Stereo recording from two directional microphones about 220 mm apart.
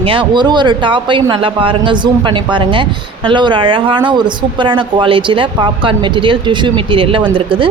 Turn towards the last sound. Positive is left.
turn(degrees=-25)  # may be behind; listen again after turning